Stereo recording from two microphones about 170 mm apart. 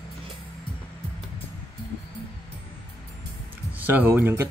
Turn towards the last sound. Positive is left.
turn(degrees=-15)  # may be behind; listen again after turning